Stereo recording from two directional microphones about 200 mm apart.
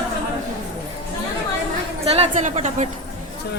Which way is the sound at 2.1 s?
30° right (ahead or behind).